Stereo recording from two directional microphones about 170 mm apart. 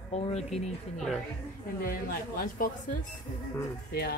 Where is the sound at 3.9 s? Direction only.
65° left (ahead or behind).